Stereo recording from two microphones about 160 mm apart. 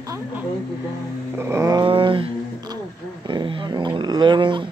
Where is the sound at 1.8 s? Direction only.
30° right (ahead or behind).